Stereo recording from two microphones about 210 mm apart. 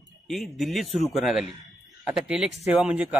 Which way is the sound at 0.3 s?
Centre (ahead or behind).